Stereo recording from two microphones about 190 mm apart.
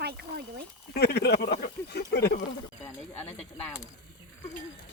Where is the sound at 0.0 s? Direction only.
60° right (ahead or behind).